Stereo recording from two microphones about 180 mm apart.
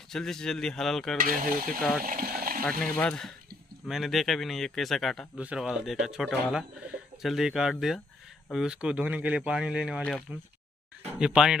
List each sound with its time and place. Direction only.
0.1 s a man's voice: 5° left (ahead or behind)
1.1 s speech: 50° right (ahead or behind)
2.0 s boiling: 50° right (ahead or behind)
2.8 s a man's voice: 5° left (ahead or behind)